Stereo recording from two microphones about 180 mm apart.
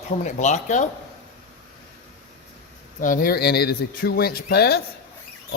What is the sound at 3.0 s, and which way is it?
Speech, 50° left (ahead or behind).